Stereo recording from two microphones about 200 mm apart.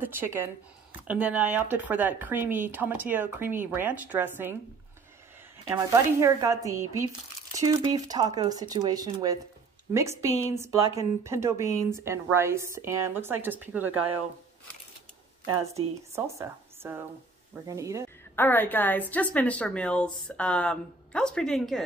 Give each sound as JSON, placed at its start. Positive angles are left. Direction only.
{"t": 0.0, "sound": "speech", "side_deg": -10}
{"t": 5.7, "sound": "speech", "side_deg": -15}
{"t": 15.4, "sound": "speech", "side_deg": -15}
{"t": 18.3, "sound": "a woman's voice", "side_deg": 10}